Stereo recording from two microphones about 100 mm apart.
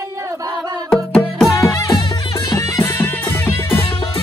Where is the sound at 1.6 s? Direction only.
35° left (ahead or behind).